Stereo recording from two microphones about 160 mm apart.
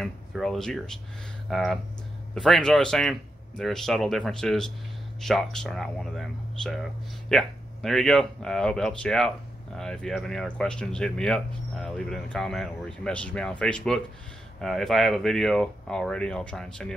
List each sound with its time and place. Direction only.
0.0 s speech: centre (ahead or behind)